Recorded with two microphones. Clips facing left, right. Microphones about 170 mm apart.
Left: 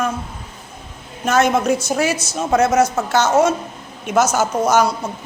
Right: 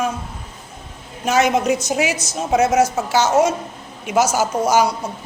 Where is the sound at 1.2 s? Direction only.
10° right (ahead or behind).